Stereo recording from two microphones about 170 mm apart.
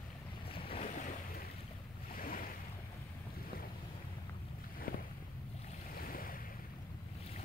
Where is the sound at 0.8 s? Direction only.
50° left (ahead or behind).